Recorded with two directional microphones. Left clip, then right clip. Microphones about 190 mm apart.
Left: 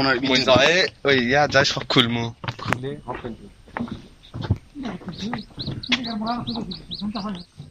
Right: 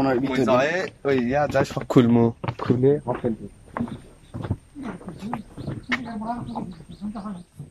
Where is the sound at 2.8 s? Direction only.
50° right (ahead or behind).